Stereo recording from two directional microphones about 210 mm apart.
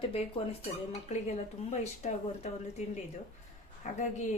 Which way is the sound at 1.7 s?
35° left (ahead or behind).